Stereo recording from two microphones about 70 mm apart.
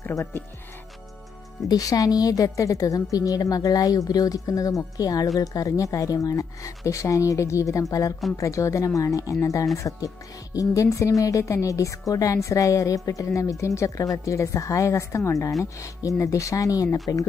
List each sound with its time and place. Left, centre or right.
0.1 s speech: left
1.7 s a woman's voice: left